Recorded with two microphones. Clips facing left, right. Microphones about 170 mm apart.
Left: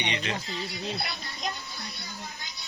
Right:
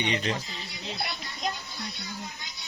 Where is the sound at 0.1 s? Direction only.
40° right (ahead or behind).